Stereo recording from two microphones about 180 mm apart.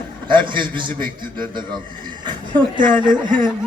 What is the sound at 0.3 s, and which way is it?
Speech, 25° right (ahead or behind).